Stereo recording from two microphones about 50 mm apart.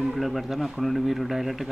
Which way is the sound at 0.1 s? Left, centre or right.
Centre.